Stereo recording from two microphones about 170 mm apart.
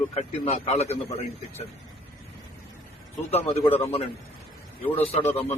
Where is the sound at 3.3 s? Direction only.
35° left (ahead or behind).